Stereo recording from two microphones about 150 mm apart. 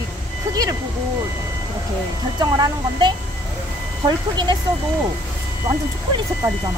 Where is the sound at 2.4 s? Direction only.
25° right (ahead or behind).